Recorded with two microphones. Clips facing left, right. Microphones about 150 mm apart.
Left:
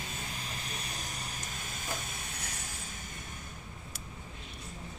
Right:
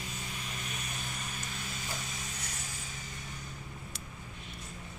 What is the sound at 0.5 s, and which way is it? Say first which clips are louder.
Vehicle: even; 35° left (ahead or behind).